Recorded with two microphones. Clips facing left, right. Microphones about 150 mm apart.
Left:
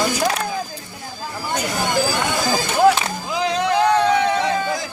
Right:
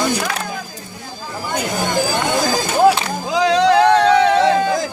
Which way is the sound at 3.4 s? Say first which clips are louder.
Right 6 dB; 85° right.